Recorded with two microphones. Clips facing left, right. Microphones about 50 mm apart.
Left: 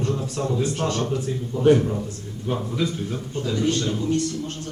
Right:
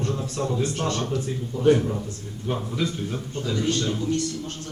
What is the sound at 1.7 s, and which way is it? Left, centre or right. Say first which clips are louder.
A man's voice: left 2 dB; centre.